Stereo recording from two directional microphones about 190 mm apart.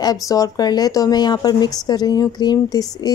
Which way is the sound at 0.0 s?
20° left (ahead or behind).